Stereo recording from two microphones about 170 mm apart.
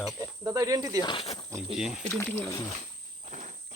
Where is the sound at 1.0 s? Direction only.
35° left (ahead or behind).